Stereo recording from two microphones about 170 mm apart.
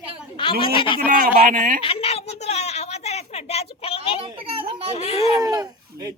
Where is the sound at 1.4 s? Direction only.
55° right (ahead or behind).